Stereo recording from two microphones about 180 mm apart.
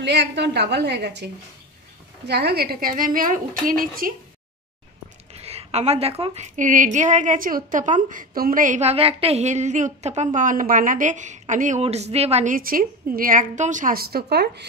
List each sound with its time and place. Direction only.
0.0 s a woman's voice: 70° right (ahead or behind); by 4.1 s 50° right (ahead or behind)
5.3 s a woman's voice: 35° right (ahead or behind)
12.5 s a woman's voice: 50° right (ahead or behind)